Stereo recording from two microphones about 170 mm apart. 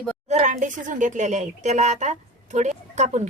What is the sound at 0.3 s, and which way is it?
Speech, 45° right (ahead or behind).